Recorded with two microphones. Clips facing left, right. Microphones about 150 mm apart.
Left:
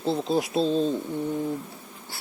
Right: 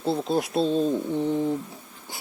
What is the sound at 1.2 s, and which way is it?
Speech, 20° right (ahead or behind).